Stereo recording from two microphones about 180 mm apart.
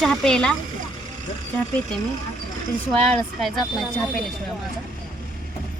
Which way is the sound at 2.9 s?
Centre (ahead or behind).